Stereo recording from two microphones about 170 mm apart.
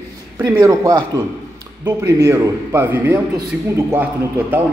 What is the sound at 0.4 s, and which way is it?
A man's voice, 20° right (ahead or behind).